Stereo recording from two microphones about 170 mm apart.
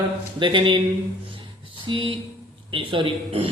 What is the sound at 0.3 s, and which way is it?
Speech, 30° right (ahead or behind).